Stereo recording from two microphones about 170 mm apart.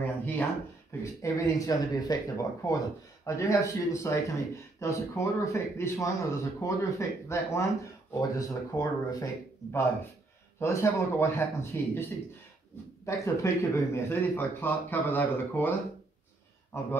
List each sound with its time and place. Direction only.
0.0 s speech: 10° left (ahead or behind)